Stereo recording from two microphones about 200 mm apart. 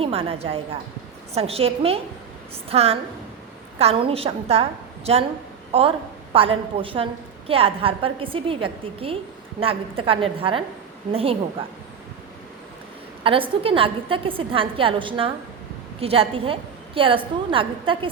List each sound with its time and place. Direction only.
0.0 s a woman's voice: 30° right (ahead or behind)
6.3 s a woman's voice: 30° right (ahead or behind)
13.2 s a woman's voice: 25° right (ahead or behind)